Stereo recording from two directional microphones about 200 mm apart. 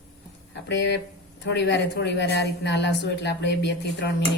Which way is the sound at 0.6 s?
60° left (ahead or behind).